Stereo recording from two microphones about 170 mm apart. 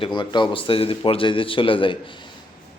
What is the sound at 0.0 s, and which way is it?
A man's voice, 25° left (ahead or behind).